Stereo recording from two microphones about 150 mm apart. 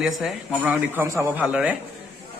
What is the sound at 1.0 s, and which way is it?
Speech, 15° right (ahead or behind).